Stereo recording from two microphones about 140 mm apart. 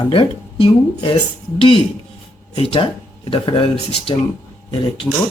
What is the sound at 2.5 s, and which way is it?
Speech, 45° left (ahead or behind).